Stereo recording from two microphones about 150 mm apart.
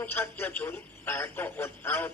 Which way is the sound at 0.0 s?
15° left (ahead or behind).